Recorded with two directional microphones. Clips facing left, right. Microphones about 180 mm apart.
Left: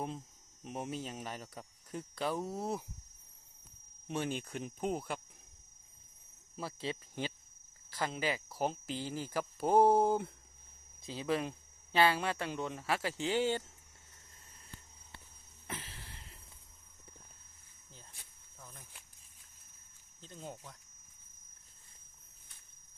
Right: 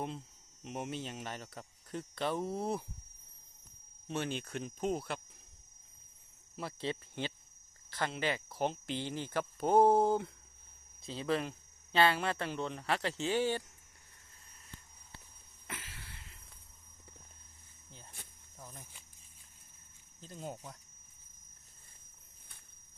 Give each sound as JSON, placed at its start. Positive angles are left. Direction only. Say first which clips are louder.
{"t": 0.7, "sound": "speech", "louder": "even", "side_deg": 10}
{"t": 4.1, "sound": "speech", "louder": "even", "side_deg": 10}
{"t": 6.6, "sound": "speech", "louder": "right 1 dB", "side_deg": 5}
{"t": 15.6, "sound": "a sound", "louder": "left 2 dB", "side_deg": 30}
{"t": 20.2, "sound": "speech", "louder": "right 3 dB", "side_deg": -10}